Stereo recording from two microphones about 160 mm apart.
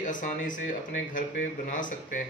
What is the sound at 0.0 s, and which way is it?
Speech, 55° left (ahead or behind).